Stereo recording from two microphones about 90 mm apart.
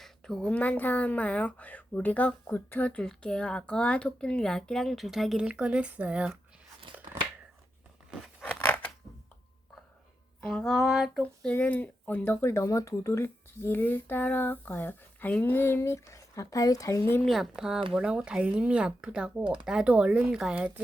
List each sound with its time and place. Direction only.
0.0 s speech: 5° left (ahead or behind)
5.5 s speech: 10° right (ahead or behind)
8.4 s scissors: 20° left (ahead or behind)
10.4 s a sound: 5° left (ahead or behind)
11.2 s speech: 15° left (ahead or behind); by 17.0 s 40° left (ahead or behind)
17.2 s a sound: centre (ahead or behind)
17.9 s speech: 10° right (ahead or behind)